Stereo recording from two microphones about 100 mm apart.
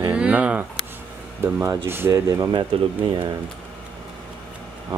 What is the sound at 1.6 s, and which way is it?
Speech, 25° right (ahead or behind).